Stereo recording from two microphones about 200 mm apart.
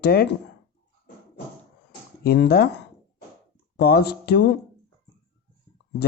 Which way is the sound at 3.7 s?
50° left (ahead or behind).